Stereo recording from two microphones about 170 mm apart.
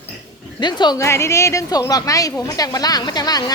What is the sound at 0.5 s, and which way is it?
A woman's voice, 25° left (ahead or behind).